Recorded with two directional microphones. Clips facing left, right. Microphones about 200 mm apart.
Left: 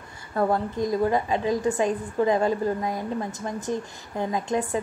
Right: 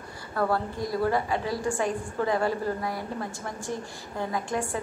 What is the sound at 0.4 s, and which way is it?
A woman's voice, 20° left (ahead or behind).